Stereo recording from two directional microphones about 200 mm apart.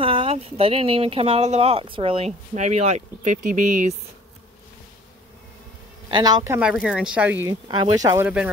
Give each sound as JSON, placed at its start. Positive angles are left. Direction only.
{"t": 0.0, "sound": "speech", "side_deg": -25}
{"t": 6.0, "sound": "speech", "side_deg": -20}
{"t": 6.7, "sound": "speech", "side_deg": -5}
{"t": 7.4, "sound": "speech", "side_deg": -20}